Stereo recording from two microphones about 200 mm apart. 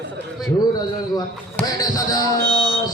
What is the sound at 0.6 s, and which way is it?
Speech, 20° left (ahead or behind).